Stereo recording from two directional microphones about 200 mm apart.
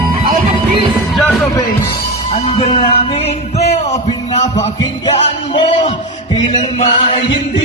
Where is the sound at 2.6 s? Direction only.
30° left (ahead or behind).